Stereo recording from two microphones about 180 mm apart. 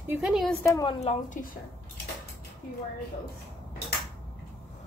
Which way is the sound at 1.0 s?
40° left (ahead or behind).